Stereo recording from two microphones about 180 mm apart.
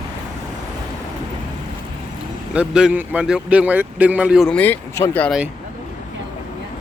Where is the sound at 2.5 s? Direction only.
5° right (ahead or behind).